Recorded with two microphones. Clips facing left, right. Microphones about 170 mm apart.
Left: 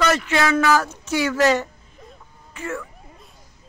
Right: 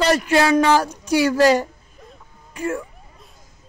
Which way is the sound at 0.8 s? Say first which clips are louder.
Right 4 dB; 15° right (ahead or behind).